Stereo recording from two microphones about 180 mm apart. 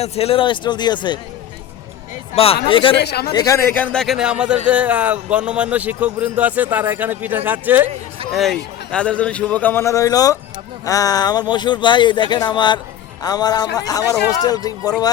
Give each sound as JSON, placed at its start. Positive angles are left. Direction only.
{"t": 0.0, "sound": "a man's voice", "side_deg": 35}
{"t": 2.3, "sound": "a man's voice", "side_deg": 35}
{"t": 3.0, "sound": "speech", "side_deg": 65}
{"t": 3.3, "sound": "speech", "side_deg": 20}
{"t": 8.4, "sound": "a man's voice", "side_deg": 5}